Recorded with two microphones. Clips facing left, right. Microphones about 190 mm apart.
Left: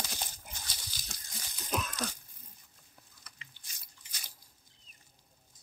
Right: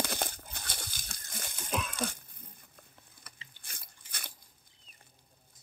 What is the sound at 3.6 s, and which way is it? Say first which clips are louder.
Biting: right 6 dB; 55° right (ahead or behind).